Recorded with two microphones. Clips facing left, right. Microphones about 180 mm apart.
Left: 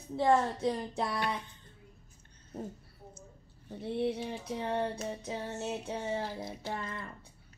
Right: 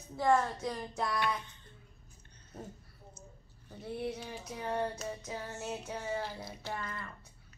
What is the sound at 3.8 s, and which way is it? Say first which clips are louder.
Female singing: left 6 dB; 25° left (ahead or behind).